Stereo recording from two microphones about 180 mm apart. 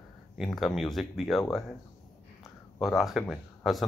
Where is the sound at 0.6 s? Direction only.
Centre (ahead or behind).